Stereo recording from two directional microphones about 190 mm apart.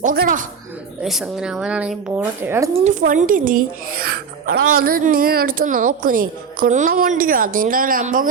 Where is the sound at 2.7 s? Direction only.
40° right (ahead or behind).